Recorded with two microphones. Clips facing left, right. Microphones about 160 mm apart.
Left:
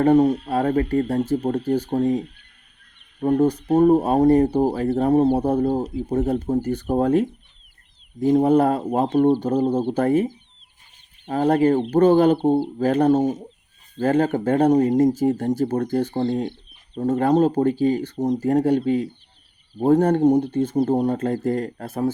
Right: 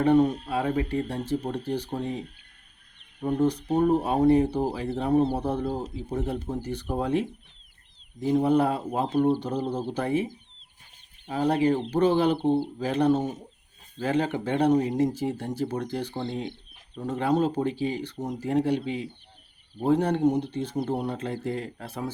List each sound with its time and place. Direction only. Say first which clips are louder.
0.0 s speech: left 5 dB; 40° left (ahead or behind)
11.3 s speech: left 6 dB; 45° left (ahead or behind)